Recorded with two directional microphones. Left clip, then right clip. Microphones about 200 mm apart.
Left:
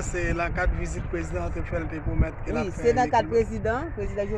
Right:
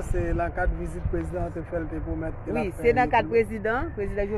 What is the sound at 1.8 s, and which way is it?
Speech, 35° right (ahead or behind).